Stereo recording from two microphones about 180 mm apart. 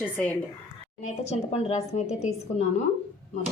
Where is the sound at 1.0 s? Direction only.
35° left (ahead or behind).